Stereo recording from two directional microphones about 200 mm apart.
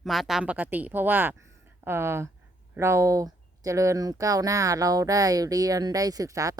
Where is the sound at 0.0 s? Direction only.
Centre (ahead or behind).